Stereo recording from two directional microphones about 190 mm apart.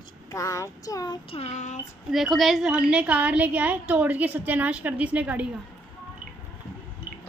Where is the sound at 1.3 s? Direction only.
35° left (ahead or behind).